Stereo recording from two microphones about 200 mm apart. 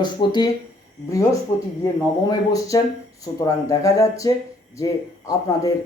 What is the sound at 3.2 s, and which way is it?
Speech, 15° left (ahead or behind).